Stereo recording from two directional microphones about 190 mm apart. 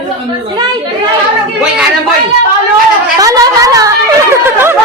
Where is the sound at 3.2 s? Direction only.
20° right (ahead or behind).